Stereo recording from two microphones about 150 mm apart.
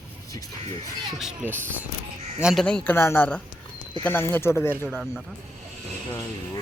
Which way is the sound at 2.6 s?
10° left (ahead or behind).